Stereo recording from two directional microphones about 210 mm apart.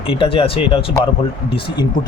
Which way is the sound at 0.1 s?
25° left (ahead or behind).